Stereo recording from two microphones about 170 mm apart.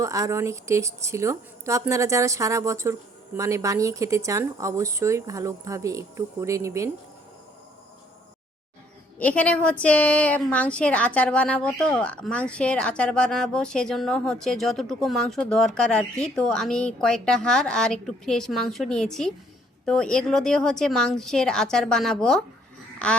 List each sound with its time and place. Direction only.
0.0 s speech: 20° right (ahead or behind)
9.1 s a woman's voice: 10° left (ahead or behind)